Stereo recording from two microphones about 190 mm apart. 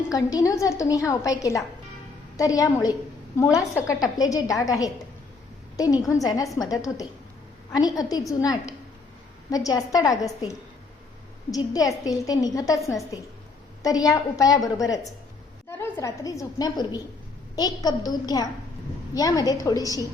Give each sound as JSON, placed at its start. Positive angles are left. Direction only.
{"t": 0.1, "sound": "a woman's voice", "side_deg": 20}